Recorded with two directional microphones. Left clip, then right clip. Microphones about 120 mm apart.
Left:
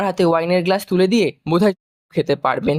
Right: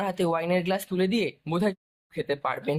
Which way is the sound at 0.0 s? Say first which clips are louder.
Left 10 dB; 50° left (ahead or behind).